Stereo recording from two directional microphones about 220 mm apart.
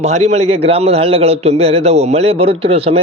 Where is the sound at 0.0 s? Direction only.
30° right (ahead or behind).